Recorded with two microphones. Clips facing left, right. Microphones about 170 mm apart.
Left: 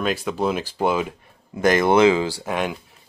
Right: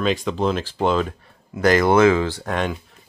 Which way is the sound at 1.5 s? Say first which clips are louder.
Right 1 dB; 20° left (ahead or behind).